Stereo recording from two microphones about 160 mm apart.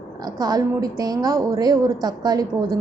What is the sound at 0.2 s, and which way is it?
A woman's voice, 25° right (ahead or behind).